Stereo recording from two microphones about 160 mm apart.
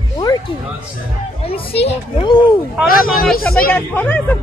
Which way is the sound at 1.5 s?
35° left (ahead or behind).